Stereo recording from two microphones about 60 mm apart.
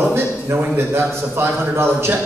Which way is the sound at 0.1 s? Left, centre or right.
Right.